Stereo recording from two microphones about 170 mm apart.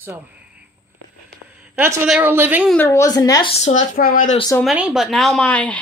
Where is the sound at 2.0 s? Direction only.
10° right (ahead or behind).